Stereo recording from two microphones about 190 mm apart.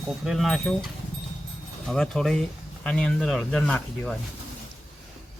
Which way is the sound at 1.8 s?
5° left (ahead or behind).